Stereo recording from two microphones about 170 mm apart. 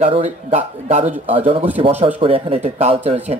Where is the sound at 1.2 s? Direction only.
30° right (ahead or behind).